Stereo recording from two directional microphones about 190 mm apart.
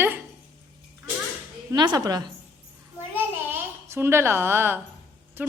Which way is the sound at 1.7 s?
20° right (ahead or behind).